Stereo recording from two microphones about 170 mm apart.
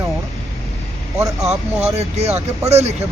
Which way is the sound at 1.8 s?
40° right (ahead or behind).